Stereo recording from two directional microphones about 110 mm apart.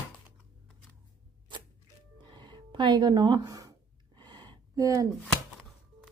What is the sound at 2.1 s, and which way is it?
Music, 45° right (ahead or behind).